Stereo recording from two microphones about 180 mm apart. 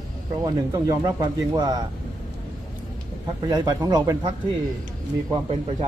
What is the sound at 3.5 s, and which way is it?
Speech, 20° right (ahead or behind).